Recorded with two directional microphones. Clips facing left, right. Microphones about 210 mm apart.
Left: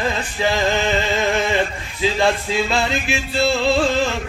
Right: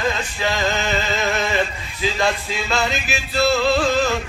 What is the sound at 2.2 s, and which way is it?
Male singing, 30° left (ahead or behind).